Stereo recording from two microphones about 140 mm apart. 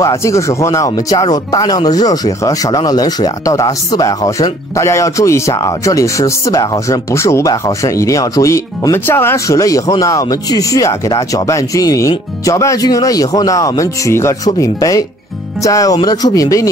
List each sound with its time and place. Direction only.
0.0 s speech: 20° left (ahead or behind)